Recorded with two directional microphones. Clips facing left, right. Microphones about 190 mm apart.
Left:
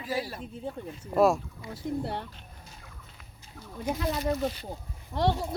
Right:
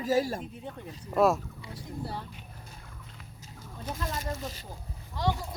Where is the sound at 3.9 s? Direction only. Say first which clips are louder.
Left 7 dB; 10° left (ahead or behind).